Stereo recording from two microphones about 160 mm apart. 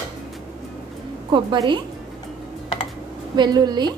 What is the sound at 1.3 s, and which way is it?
Speech, 30° right (ahead or behind).